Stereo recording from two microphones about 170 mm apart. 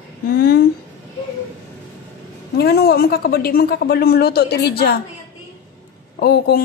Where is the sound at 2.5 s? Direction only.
70° left (ahead or behind).